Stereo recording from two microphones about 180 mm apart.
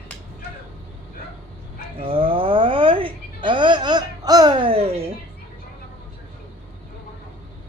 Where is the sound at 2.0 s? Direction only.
30° right (ahead or behind).